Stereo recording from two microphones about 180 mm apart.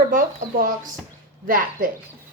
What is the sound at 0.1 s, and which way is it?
Speech, 50° right (ahead or behind).